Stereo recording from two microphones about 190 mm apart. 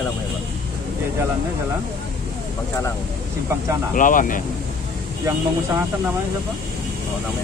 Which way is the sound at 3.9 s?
45° left (ahead or behind).